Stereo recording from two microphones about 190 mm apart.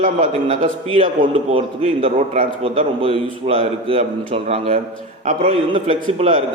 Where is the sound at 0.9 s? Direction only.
30° right (ahead or behind).